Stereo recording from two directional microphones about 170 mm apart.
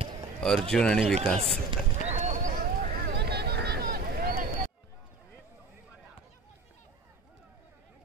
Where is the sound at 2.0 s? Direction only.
45° right (ahead or behind).